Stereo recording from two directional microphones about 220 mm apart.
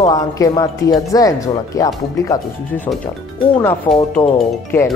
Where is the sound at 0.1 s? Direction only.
15° left (ahead or behind).